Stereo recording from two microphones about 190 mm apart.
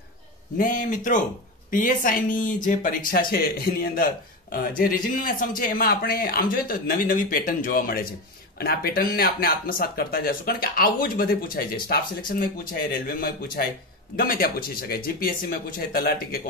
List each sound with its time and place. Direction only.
0.6 s speech: 45° left (ahead or behind)